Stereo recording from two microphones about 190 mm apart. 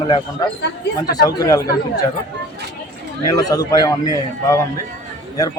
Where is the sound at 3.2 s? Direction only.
20° left (ahead or behind).